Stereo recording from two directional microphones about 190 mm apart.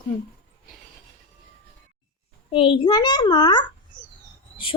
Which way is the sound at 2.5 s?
25° left (ahead or behind).